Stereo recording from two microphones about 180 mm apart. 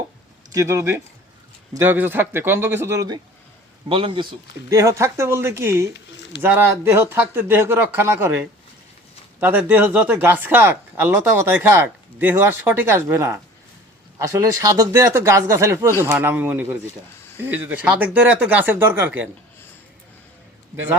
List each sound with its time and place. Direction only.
0.5 s speech: 15° right (ahead or behind)
3.8 s speech: 30° right (ahead or behind); by 19.3 s 10° right (ahead or behind)